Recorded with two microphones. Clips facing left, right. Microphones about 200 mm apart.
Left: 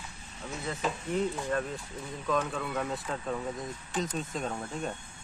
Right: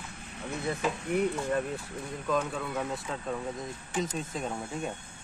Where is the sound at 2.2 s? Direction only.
5° right (ahead or behind).